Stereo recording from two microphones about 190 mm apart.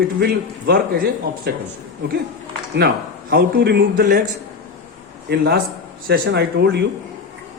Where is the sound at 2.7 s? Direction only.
55° right (ahead or behind).